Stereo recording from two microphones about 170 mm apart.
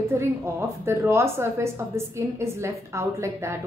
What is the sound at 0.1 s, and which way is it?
Speech, 15° right (ahead or behind).